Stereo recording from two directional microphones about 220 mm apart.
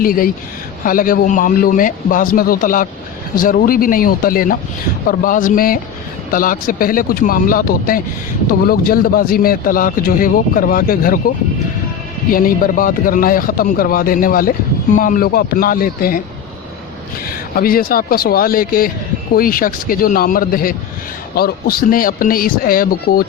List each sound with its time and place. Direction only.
0.0 s a man's voice: 40° left (ahead or behind)
12.3 s a man's voice: 40° left (ahead or behind)
17.2 s a man's voice: 40° left (ahead or behind)